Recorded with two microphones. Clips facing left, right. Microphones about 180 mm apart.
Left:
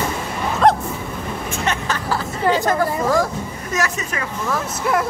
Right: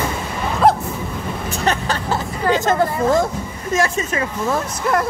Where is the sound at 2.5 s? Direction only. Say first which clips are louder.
Right 1 dB; 25° right (ahead or behind).